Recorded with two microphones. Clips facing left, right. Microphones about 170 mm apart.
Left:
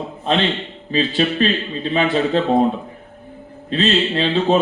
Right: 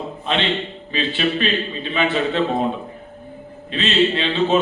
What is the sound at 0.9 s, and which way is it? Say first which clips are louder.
A man's voice: left 4 dB; 35° left (ahead or behind).